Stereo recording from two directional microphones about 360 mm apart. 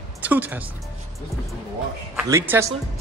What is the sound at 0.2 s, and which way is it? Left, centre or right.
Speech, centre.